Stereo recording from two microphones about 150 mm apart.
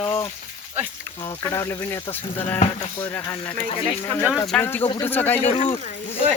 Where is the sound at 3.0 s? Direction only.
15° left (ahead or behind).